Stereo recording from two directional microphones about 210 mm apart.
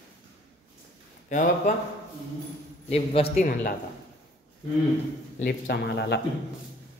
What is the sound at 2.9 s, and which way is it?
Speech, 30° left (ahead or behind).